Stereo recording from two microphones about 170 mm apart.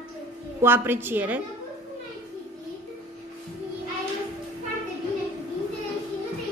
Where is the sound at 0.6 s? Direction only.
15° right (ahead or behind).